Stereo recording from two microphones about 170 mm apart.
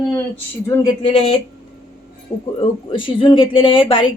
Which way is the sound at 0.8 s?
30° left (ahead or behind).